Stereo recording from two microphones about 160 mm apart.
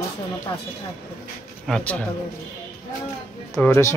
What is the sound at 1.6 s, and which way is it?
Speech, 5° left (ahead or behind).